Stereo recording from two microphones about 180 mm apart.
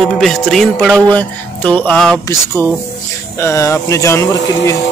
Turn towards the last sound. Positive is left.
turn(degrees=15)  # may be behind; listen again after turning